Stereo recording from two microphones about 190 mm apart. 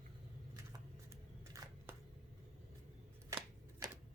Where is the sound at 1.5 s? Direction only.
15° right (ahead or behind).